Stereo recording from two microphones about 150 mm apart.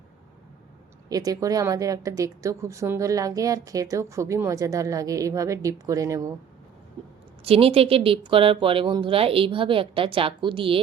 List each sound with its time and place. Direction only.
1.1 s a woman's voice: 25° right (ahead or behind)
7.4 s speech: 40° right (ahead or behind)